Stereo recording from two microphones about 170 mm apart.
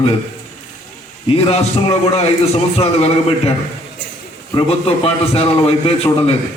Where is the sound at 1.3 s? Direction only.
35° left (ahead or behind).